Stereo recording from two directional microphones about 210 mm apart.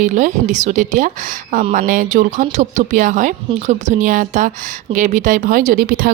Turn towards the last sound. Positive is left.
turn(degrees=-45)  # may be behind; listen again after turning